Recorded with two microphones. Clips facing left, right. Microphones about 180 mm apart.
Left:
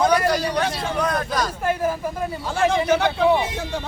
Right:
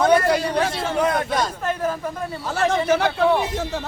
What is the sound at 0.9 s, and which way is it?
Speech, 25° right (ahead or behind).